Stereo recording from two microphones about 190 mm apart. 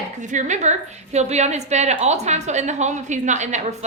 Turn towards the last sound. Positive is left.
turn(degrees=-40)  # may be behind; listen again after turning